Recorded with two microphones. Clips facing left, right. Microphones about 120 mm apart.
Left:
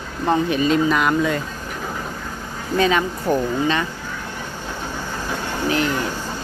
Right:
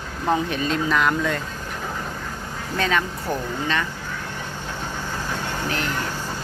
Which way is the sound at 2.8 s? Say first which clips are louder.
Left 5 dB; 15° left (ahead or behind).